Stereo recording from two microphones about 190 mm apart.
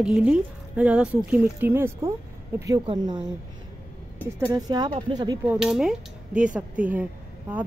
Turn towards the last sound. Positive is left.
turn(degrees=-10)  # may be behind; listen again after turning